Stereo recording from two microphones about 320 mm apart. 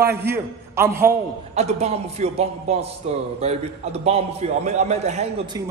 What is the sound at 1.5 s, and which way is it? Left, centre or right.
A man's voice, centre.